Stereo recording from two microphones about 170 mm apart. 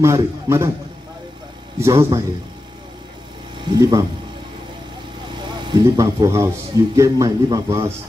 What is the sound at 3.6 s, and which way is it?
Speech, 25° right (ahead or behind).